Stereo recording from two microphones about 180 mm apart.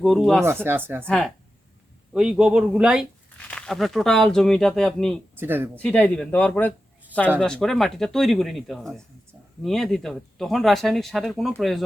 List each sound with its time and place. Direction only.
0.0 s speech: centre (ahead or behind)
0.4 s speech: 10° right (ahead or behind)
1.0 s speech: 5° left (ahead or behind)
5.4 s speech: 10° right (ahead or behind)
5.7 s speech: 5° left (ahead or behind)